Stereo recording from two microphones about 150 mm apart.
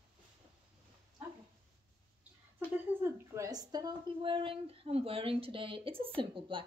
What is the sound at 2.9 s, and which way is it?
Speech, 15° right (ahead or behind).